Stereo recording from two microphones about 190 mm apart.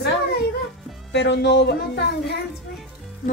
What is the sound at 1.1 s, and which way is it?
Speech, 65° left (ahead or behind).